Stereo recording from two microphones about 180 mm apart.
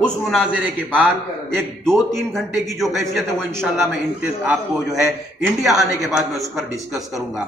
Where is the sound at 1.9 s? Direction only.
Centre (ahead or behind).